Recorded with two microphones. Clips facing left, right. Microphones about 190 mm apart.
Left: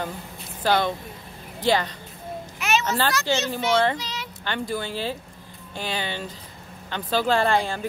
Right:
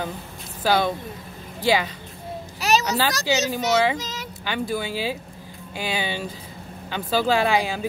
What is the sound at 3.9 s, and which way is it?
Speech, 45° right (ahead or behind).